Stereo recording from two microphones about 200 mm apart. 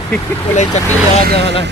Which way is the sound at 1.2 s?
55° right (ahead or behind).